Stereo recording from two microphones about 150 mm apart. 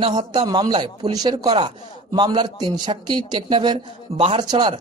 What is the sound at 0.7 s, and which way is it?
A man's voice, 35° right (ahead or behind).